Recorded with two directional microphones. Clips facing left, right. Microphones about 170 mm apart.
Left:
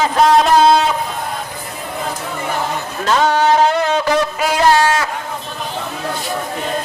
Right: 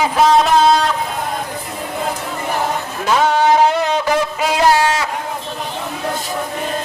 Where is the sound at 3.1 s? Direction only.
10° right (ahead or behind).